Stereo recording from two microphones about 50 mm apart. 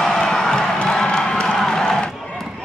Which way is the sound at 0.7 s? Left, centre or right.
Centre.